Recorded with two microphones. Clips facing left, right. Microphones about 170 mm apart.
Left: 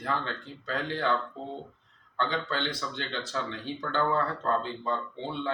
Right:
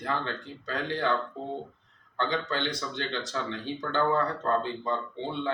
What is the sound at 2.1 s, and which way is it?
Speech, 15° right (ahead or behind).